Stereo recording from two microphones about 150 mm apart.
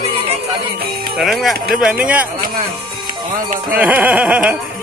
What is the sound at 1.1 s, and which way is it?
Speech, centre (ahead or behind).